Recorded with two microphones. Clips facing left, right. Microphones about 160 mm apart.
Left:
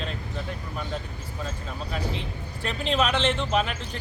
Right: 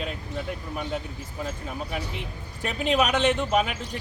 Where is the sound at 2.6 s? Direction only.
10° right (ahead or behind).